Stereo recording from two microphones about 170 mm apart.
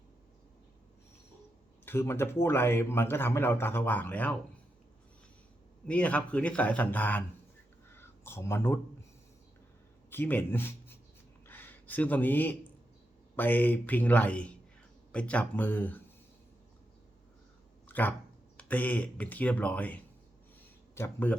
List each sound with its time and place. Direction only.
1.8 s speech: 15° left (ahead or behind)
5.9 s speech: 10° left (ahead or behind)
10.1 s speech: 10° left (ahead or behind)
11.4 s a sound: 10° left (ahead or behind)
13.3 s speech: 10° left (ahead or behind)
17.8 s a sound: 10° left (ahead or behind)
18.5 s speech: 10° left (ahead or behind)